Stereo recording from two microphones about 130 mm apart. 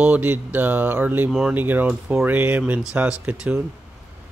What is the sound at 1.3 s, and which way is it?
Speech, 5° right (ahead or behind).